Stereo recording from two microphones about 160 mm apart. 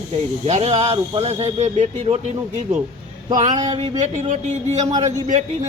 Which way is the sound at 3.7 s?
35° right (ahead or behind).